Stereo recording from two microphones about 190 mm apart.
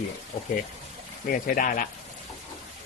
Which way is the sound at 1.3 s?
45° left (ahead or behind).